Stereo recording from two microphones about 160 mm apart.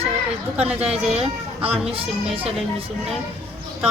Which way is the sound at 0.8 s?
40° right (ahead or behind).